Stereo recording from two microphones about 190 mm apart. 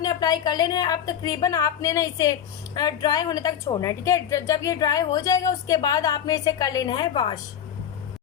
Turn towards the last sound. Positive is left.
turn(degrees=25)  # may be behind; listen again after turning